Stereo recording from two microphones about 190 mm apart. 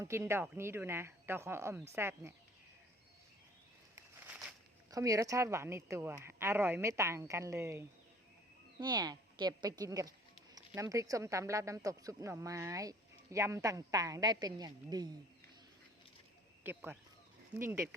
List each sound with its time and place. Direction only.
0.0 s speech: 15° right (ahead or behind)
3.9 s a sound: 10° right (ahead or behind)
4.9 s speech: 20° right (ahead or behind)
16.6 s speech: 10° right (ahead or behind)